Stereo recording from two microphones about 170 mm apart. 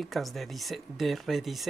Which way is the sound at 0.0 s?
Centre (ahead or behind).